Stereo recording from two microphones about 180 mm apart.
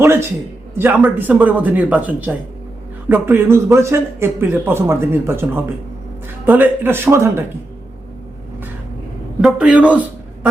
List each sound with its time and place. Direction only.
0.0 s a man's voice: 15° right (ahead or behind)
9.4 s a man's voice: 5° right (ahead or behind)